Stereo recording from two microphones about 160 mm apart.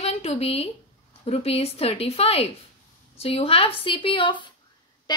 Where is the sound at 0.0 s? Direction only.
40° left (ahead or behind).